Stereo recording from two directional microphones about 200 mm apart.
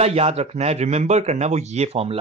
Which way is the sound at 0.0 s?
30° right (ahead or behind).